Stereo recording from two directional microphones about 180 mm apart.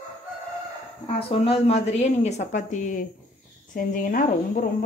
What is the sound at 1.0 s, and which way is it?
A woman's voice, 30° left (ahead or behind).